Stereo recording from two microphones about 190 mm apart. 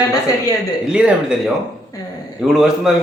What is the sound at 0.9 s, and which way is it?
Speech, 5° right (ahead or behind).